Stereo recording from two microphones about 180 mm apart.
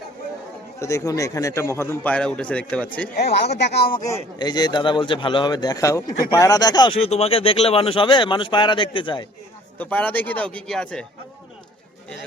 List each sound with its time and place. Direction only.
0.8 s a man's voice: 15° left (ahead or behind)
3.2 s speech: 65° left (ahead or behind)
3.9 s speech: 20° left (ahead or behind)
9.7 s a man's voice: 10° left (ahead or behind)